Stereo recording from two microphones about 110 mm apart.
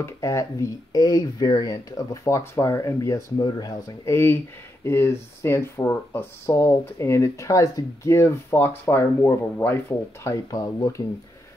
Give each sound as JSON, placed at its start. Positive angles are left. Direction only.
{"t": 0.0, "sound": "speech", "side_deg": 25}
{"t": 3.4, "sound": "speech", "side_deg": 40}
{"t": 10.5, "sound": "speech", "side_deg": 35}